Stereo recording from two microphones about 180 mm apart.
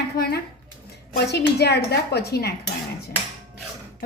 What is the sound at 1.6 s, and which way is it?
Speech, 65° left (ahead or behind).